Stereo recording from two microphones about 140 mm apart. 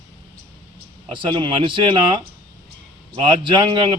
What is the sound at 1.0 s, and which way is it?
A man's voice, 35° right (ahead or behind).